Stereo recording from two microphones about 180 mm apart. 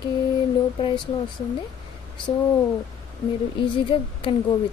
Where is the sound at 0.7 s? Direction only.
30° left (ahead or behind).